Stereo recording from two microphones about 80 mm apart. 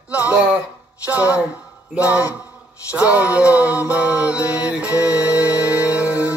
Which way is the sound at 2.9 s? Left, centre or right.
Centre.